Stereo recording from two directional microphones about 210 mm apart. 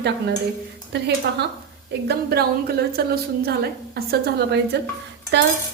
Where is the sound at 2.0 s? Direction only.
50° right (ahead or behind).